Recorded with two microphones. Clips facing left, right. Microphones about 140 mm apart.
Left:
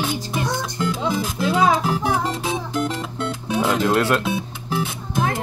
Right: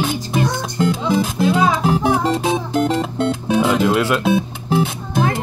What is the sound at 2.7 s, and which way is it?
Music, 60° right (ahead or behind).